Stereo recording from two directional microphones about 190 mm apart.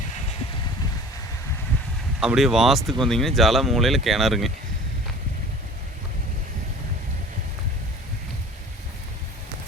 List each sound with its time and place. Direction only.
2.2 s speech: centre (ahead or behind)